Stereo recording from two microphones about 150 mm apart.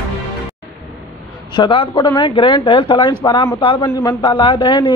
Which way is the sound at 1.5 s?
35° left (ahead or behind).